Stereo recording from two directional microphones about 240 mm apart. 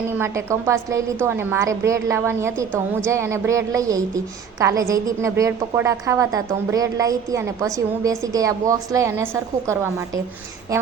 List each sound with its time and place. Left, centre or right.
0.2 s a woman's voice: centre